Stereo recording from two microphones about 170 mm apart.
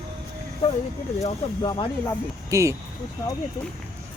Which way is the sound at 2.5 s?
15° right (ahead or behind).